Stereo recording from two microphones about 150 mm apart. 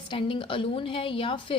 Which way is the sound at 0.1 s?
35° left (ahead or behind).